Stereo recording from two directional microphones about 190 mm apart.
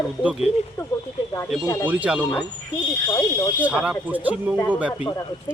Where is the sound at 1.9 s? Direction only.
5° right (ahead or behind).